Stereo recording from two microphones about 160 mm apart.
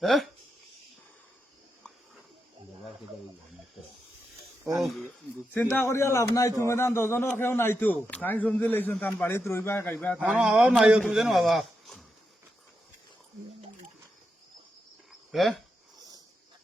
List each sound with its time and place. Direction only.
0.0 s a man's voice: centre (ahead or behind)
4.8 s a man's voice: centre (ahead or behind)
5.5 s a man's voice: 15° left (ahead or behind)
10.2 s a man's voice: 5° right (ahead or behind)
15.3 s a man's voice: centre (ahead or behind)